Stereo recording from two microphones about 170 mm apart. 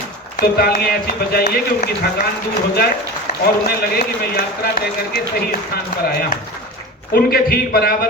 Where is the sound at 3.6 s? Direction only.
60° left (ahead or behind).